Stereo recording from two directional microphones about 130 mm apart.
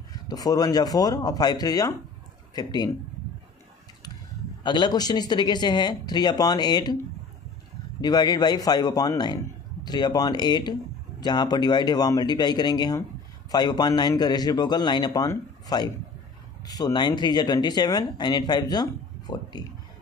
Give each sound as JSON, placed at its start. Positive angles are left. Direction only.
{"t": 0.1, "sound": "speech", "side_deg": 30}
{"t": 4.6, "sound": "speech", "side_deg": 35}
{"t": 8.0, "sound": "speech", "side_deg": 30}